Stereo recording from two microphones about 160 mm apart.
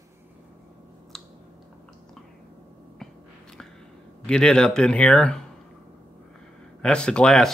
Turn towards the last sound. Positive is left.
turn(degrees=5)  # may be behind; listen again after turning